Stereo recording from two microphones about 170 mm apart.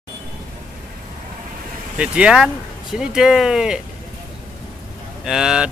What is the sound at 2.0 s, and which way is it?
Speech, 5° right (ahead or behind).